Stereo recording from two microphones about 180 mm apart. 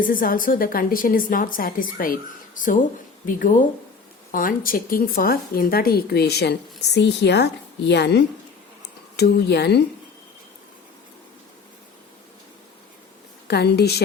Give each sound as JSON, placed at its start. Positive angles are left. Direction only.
{"t": 0.0, "sound": "a woman's voice", "side_deg": 50}
{"t": 13.5, "sound": "speech", "side_deg": 65}